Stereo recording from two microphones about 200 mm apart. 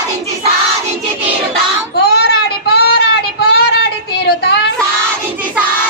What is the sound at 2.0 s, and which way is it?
Child singing, 55° left (ahead or behind).